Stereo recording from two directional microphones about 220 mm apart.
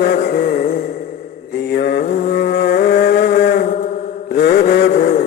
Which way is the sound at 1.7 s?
45° left (ahead or behind).